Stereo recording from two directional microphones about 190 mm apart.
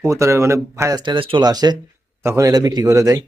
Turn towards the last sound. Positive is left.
turn(degrees=-20)  # may be behind; listen again after turning